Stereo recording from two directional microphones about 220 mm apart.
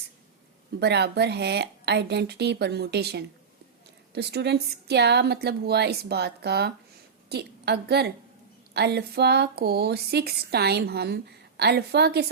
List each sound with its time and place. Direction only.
0.8 s a woman's voice: 50° right (ahead or behind)